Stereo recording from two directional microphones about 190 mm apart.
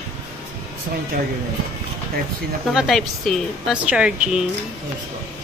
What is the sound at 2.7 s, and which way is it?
A woman's voice, centre (ahead or behind).